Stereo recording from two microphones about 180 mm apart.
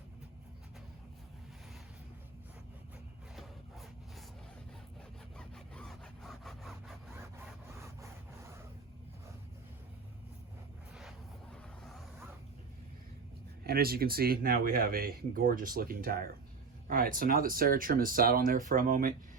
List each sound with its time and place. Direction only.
5.4 s sawing: 5° left (ahead or behind)
11.5 s a sound: centre (ahead or behind)
13.7 s speech: 55° right (ahead or behind)